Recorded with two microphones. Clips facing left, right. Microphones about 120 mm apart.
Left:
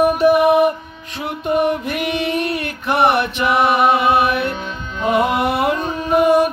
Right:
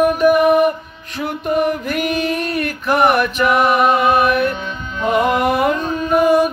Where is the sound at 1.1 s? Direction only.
30° left (ahead or behind).